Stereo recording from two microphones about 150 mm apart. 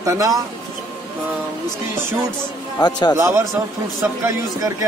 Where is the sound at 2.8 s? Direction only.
25° left (ahead or behind).